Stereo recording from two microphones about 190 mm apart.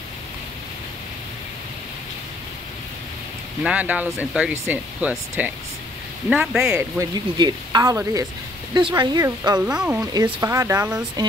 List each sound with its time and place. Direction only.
3.6 s speech: 5° right (ahead or behind)
7.0 s speech: 20° right (ahead or behind)
9.6 s speech: 5° right (ahead or behind)
10.2 s speech: 15° right (ahead or behind)